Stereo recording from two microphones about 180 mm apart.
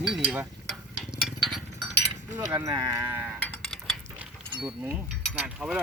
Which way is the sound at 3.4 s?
Centre (ahead or behind).